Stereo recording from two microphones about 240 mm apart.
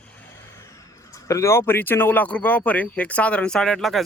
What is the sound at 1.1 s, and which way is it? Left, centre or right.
Speech, centre.